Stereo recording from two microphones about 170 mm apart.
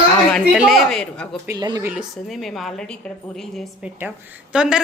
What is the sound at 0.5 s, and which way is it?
Speech, 5° right (ahead or behind).